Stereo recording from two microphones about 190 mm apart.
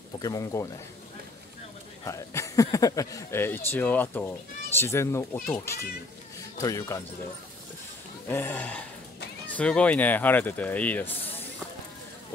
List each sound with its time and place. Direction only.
0.2 s speech: 20° left (ahead or behind)
2.0 s speech: 15° left (ahead or behind)
8.3 s speech: 10° left (ahead or behind)